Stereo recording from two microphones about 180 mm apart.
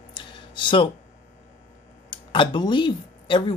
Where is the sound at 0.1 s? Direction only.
25° left (ahead or behind).